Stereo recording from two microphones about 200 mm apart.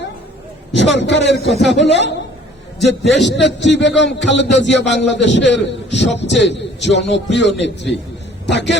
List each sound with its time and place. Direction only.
0.7 s a man's voice: 60° left (ahead or behind)